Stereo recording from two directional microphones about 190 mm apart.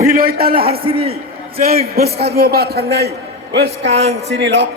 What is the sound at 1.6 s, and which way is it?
A man's voice, 50° right (ahead or behind).